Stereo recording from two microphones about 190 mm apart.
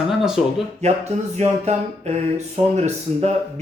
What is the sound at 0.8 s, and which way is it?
Speech, 35° right (ahead or behind).